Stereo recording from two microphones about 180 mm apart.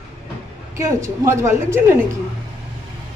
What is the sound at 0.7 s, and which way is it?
A woman's voice, 15° right (ahead or behind).